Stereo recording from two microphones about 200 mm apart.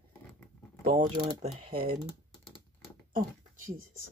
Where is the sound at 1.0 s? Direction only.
20° right (ahead or behind).